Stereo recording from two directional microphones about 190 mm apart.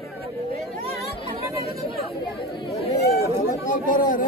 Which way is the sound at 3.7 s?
45° left (ahead or behind).